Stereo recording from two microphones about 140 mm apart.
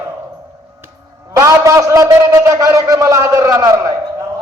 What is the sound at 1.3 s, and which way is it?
A man's voice, 20° right (ahead or behind).